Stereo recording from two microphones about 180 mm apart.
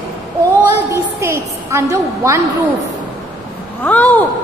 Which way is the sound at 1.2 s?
15° right (ahead or behind).